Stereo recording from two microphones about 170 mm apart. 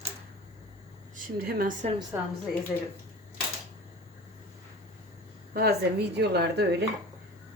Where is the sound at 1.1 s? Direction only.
55° right (ahead or behind).